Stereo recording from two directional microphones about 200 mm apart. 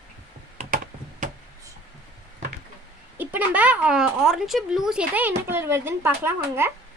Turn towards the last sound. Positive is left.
turn(degrees=-10)  # may be behind; listen again after turning